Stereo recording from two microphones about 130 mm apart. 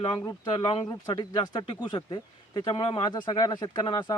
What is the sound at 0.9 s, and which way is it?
Speech, 30° left (ahead or behind).